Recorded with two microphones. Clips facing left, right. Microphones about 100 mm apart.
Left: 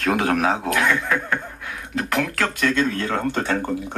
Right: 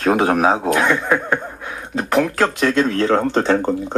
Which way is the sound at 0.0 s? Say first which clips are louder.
Right 5 dB; 30° right (ahead or behind).